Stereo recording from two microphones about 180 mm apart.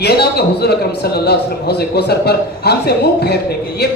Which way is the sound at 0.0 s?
65° left (ahead or behind).